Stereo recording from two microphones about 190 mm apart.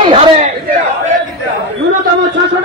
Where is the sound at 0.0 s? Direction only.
30° right (ahead or behind).